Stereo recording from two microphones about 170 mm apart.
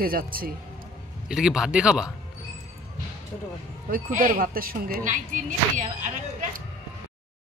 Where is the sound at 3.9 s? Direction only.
50° right (ahead or behind).